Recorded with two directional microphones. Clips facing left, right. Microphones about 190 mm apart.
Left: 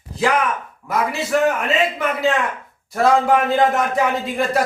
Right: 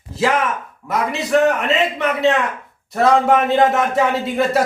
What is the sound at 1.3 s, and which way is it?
A man's voice, centre (ahead or behind).